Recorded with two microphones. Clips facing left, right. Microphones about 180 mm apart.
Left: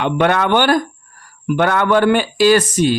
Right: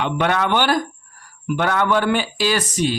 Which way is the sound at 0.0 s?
55° left (ahead or behind).